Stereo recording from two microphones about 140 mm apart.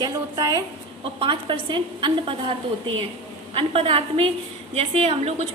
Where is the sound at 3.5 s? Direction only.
40° right (ahead or behind).